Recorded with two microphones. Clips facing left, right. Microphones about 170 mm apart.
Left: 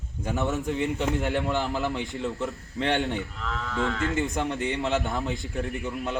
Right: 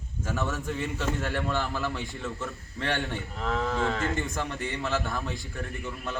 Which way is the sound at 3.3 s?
40° right (ahead or behind).